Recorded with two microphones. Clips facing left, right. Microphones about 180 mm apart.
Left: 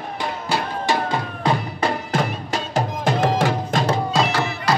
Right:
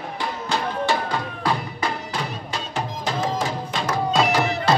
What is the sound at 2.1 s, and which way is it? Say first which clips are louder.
Music: left 6 dB; 45° left (ahead or behind).